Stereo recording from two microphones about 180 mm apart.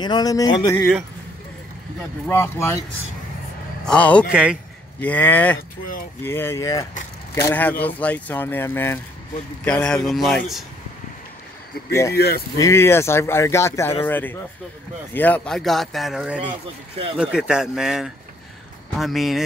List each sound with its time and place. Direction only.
0.0 s speech: 20° left (ahead or behind)
2.2 s speech: 15° left (ahead or behind)
3.8 s speech: 5° left (ahead or behind)
4.3 s speech: 5° right (ahead or behind)
5.0 s speech: 10° left (ahead or behind)
7.4 s speech: 10° left (ahead or behind)
11.9 s speech: 15° left (ahead or behind)
12.2 s speech: 60° left (ahead or behind)
12.5 s speech: 15° left (ahead or behind); by 19.4 s centre (ahead or behind)